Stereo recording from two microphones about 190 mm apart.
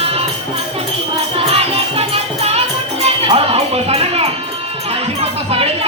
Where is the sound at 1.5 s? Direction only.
30° right (ahead or behind).